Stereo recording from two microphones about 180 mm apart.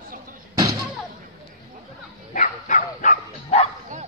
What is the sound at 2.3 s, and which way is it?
Dog, 45° left (ahead or behind).